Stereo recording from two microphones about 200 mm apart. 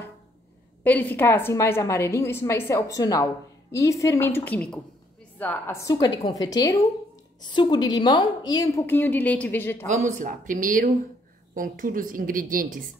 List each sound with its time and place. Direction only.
0.8 s a woman's voice: 10° left (ahead or behind)
9.8 s a woman's voice: 35° right (ahead or behind)